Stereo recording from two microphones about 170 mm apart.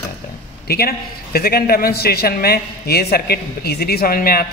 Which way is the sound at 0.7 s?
65° left (ahead or behind).